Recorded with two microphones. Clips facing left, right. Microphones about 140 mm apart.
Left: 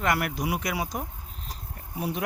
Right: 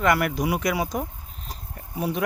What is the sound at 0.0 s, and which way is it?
Speech, 55° right (ahead or behind).